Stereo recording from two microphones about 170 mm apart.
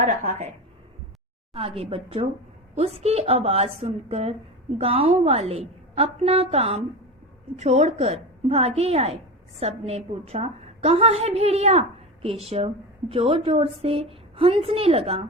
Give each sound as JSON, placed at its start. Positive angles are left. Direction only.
{"t": 0.0, "sound": "a woman's voice", "side_deg": -40}
{"t": 1.5, "sound": "a woman's voice", "side_deg": -35}